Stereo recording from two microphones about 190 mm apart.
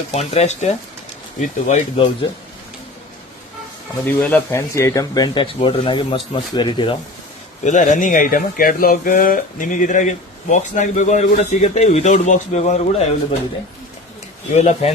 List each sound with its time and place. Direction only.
0.1 s speech: 35° left (ahead or behind)
4.0 s speech: 10° left (ahead or behind); by 6.9 s 25° left (ahead or behind)
7.6 s speech: 40° left (ahead or behind)
14.5 s speech: 35° left (ahead or behind)